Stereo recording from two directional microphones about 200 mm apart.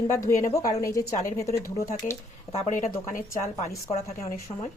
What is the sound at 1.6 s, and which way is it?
Speech, 45° left (ahead or behind).